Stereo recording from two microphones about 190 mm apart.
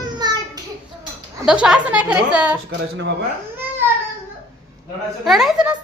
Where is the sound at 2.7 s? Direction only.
70° right (ahead or behind).